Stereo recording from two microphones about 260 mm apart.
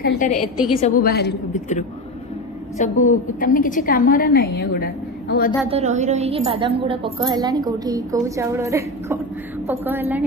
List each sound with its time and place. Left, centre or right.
0.0 s a woman's voice: left
5.7 s a woman's voice: right; by 10.2 s centre